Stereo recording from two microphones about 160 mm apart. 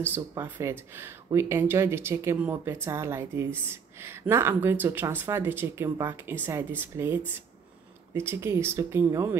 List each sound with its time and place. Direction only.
0.0 s speech: 15° right (ahead or behind)